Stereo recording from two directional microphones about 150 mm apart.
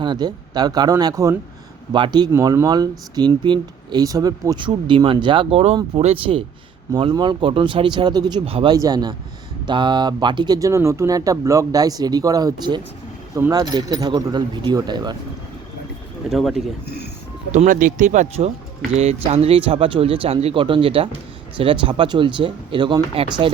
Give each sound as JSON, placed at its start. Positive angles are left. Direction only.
{"t": 0.0, "sound": "speech", "side_deg": -30}
{"t": 16.3, "sound": "speech", "side_deg": 0}
{"t": 16.8, "sound": "speech", "side_deg": 90}
{"t": 17.5, "sound": "speech", "side_deg": -55}